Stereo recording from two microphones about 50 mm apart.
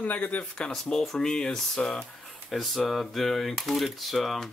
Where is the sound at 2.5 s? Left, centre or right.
Centre.